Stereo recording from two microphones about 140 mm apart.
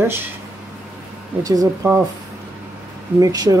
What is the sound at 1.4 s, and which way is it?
Speech, 20° right (ahead or behind).